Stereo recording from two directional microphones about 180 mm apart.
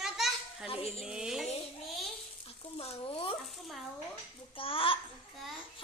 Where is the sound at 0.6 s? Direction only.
30° left (ahead or behind).